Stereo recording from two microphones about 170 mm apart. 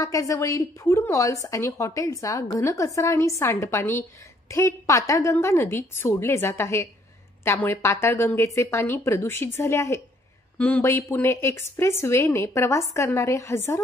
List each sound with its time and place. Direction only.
0.0 s a woman's voice: 20° left (ahead or behind)